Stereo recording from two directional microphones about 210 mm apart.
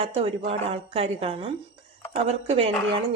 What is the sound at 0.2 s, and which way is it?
A woman's voice, 30° right (ahead or behind).